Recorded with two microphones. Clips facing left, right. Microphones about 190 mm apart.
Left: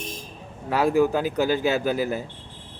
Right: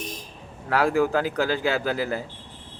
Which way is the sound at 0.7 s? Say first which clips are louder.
Left 1 dB; 15° left (ahead or behind).